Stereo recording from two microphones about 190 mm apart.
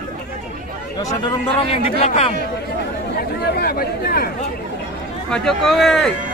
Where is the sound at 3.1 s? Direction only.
55° left (ahead or behind).